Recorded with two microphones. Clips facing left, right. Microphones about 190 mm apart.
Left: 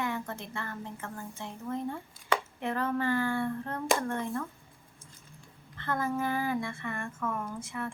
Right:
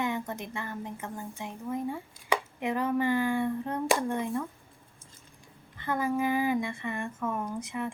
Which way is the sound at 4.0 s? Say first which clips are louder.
Right 2 dB; 15° right (ahead or behind).